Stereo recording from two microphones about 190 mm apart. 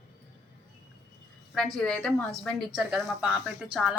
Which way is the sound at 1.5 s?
5° left (ahead or behind).